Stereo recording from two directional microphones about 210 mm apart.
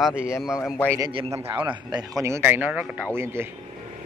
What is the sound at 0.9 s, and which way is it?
A man's voice, 15° right (ahead or behind).